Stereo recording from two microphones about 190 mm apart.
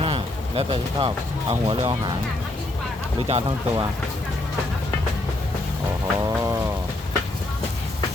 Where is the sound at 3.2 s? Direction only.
30° right (ahead or behind).